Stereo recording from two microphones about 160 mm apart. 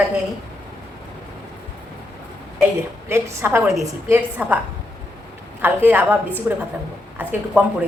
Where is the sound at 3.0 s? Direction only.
15° right (ahead or behind).